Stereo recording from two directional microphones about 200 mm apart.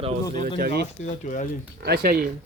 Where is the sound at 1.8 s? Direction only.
50° right (ahead or behind).